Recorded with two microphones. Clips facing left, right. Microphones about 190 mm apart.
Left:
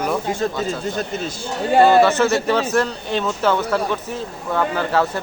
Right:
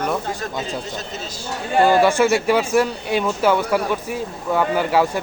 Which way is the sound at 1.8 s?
10° right (ahead or behind).